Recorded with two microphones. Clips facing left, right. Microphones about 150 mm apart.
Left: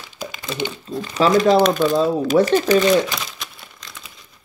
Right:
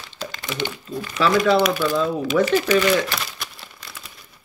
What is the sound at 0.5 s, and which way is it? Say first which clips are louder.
Speech: left 2 dB; 20° left (ahead or behind).